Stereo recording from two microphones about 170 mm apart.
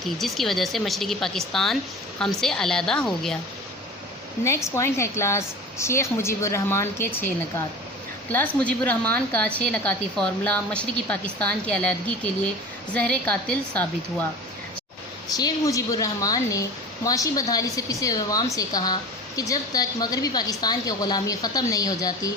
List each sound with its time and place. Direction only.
0.2 s speech: centre (ahead or behind)
4.4 s a woman's voice: 15° left (ahead or behind)
8.3 s a woman's voice: 10° left (ahead or behind)
15.3 s a woman's voice: 20° left (ahead or behind)